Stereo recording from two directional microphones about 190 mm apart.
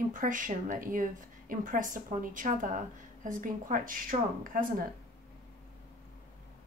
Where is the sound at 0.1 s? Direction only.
45° right (ahead or behind).